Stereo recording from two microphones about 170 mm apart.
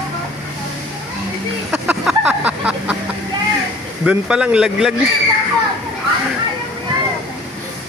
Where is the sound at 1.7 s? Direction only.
5° right (ahead or behind).